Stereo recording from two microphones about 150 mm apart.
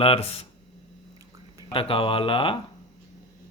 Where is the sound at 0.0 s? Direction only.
40° left (ahead or behind).